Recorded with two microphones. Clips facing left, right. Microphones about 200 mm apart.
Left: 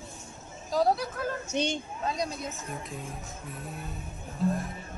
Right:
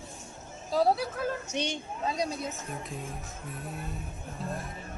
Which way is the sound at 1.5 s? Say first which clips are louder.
Left 3 dB; 45° left (ahead or behind).